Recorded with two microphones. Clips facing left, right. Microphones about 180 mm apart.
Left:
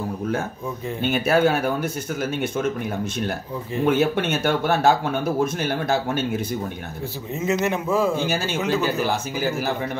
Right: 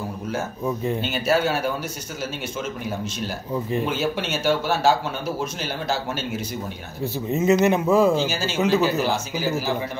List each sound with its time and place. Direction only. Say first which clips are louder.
1.0 s speech: left 5 dB; 55° left (ahead or behind)
3.8 s speech: left 5 dB; 55° left (ahead or behind)
7.4 s speech: right 4 dB; 20° right (ahead or behind)
8.2 s speech: right 1 dB; 60° left (ahead or behind)